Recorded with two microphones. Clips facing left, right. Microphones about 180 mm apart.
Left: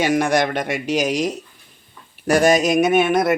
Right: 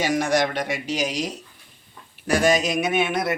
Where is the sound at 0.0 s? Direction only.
55° left (ahead or behind).